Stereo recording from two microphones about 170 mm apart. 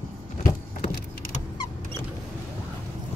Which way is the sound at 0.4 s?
45° left (ahead or behind).